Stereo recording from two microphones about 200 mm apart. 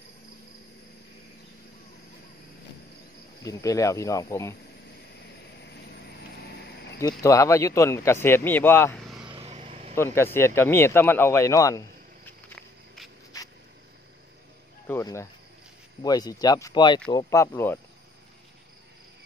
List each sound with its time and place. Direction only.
3.4 s speech: 15° left (ahead or behind)
7.0 s speech: 15° left (ahead or behind)
9.0 s vehicle: centre (ahead or behind)
9.3 s vehicle: 30° right (ahead or behind)
9.9 s speech: 10° left (ahead or behind)
12.3 s walk: 5° left (ahead or behind)
13.3 s a sound: 15° left (ahead or behind)
14.9 s speech: 15° left (ahead or behind)